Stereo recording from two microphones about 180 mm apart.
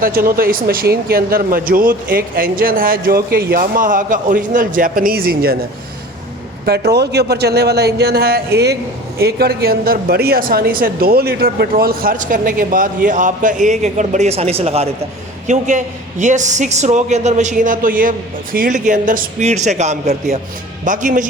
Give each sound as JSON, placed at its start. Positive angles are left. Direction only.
{"t": 0.0, "sound": "speech", "side_deg": -55}
{"t": 6.7, "sound": "a man's voice", "side_deg": -65}